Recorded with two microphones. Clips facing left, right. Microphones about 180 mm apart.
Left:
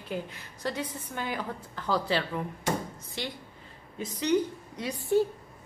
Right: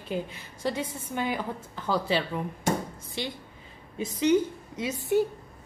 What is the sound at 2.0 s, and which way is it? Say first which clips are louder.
Speech: right 2 dB; 20° right (ahead or behind).